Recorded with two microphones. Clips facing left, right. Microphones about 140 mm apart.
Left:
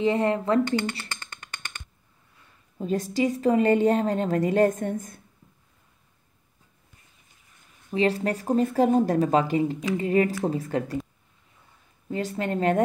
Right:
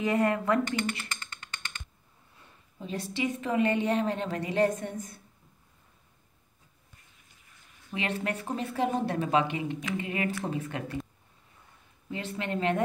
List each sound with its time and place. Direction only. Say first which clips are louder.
0.0 s speech: left 3 dB; 25° left (ahead or behind)
2.8 s a woman's voice: left 7 dB; 45° left (ahead or behind)
7.9 s speech: left 8 dB; 35° left (ahead or behind)
12.1 s speech: left 6 dB; 40° left (ahead or behind)